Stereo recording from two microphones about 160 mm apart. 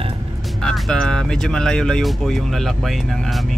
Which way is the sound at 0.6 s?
5° left (ahead or behind).